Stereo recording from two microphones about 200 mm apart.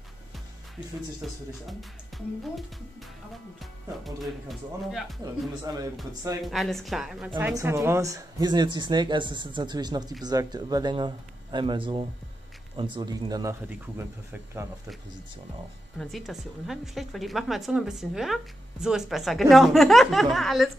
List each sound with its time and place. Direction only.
1.2 s a woman's voice: centre (ahead or behind)
4.0 s a woman's voice: centre (ahead or behind)
6.4 s a woman's voice: centre (ahead or behind)
16.0 s a woman's voice: centre (ahead or behind)